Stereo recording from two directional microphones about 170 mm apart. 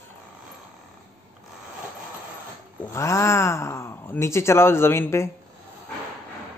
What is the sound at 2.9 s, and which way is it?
Speech, 15° left (ahead or behind).